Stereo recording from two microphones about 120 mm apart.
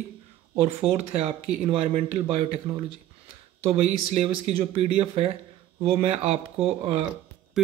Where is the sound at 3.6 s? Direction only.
55° right (ahead or behind).